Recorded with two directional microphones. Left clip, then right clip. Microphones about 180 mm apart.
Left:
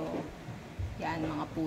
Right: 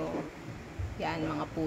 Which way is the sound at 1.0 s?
10° right (ahead or behind).